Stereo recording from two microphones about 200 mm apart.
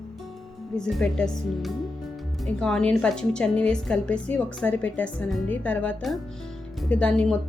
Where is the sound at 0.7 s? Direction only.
5° left (ahead or behind).